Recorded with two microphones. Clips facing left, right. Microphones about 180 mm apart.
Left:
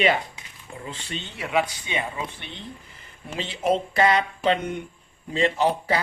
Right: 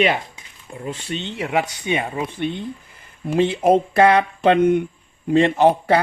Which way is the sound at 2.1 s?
50° right (ahead or behind).